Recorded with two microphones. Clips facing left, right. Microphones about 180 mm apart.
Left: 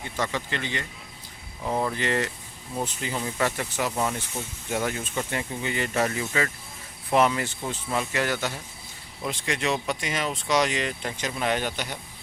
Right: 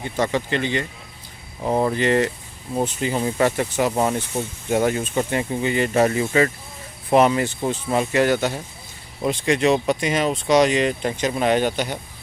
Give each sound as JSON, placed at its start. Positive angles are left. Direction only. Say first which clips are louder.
{"t": 0.0, "sound": "speech", "louder": "right 7 dB", "side_deg": -25}
{"t": 1.6, "sound": "speech", "louder": "right 7 dB", "side_deg": -35}
{"t": 2.0, "sound": "speech", "louder": "right 8 dB", "side_deg": -25}